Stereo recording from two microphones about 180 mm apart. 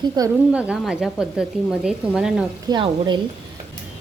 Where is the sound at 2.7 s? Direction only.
25° right (ahead or behind).